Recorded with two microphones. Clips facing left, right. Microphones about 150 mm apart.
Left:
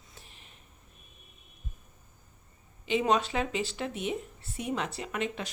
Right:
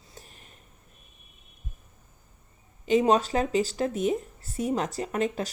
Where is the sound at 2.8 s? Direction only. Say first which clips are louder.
Right 5 dB; 40° right (ahead or behind).